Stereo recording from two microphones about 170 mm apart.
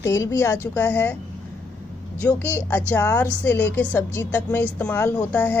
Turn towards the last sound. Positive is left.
turn(degrees=10)  # may be behind; listen again after turning